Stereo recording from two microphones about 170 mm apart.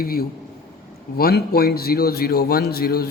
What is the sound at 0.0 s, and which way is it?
A man's voice, 60° left (ahead or behind).